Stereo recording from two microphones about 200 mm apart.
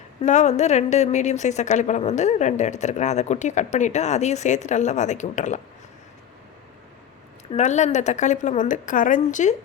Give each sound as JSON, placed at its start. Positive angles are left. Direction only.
{"t": 0.2, "sound": "a woman's voice", "side_deg": 35}
{"t": 7.5, "sound": "a woman's voice", "side_deg": 35}